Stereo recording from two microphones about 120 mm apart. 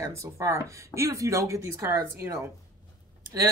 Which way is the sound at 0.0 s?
25° right (ahead or behind).